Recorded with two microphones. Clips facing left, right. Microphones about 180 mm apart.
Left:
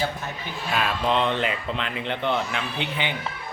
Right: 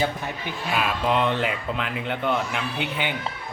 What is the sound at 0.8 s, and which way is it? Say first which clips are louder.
Speech: even; 10° right (ahead or behind).